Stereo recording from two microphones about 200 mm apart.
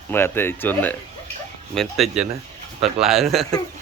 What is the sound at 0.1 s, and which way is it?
A man's voice, 10° left (ahead or behind).